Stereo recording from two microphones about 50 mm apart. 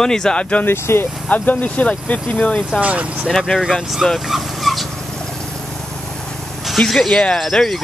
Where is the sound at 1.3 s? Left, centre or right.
Left.